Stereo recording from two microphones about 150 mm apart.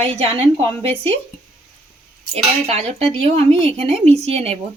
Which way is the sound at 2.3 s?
45° right (ahead or behind).